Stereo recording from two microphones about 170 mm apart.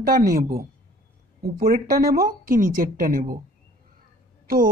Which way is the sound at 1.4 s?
60° right (ahead or behind).